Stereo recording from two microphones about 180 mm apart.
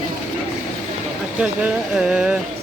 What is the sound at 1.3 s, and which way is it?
Speech, 5° right (ahead or behind).